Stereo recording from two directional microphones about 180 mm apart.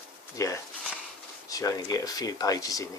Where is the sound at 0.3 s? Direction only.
20° left (ahead or behind).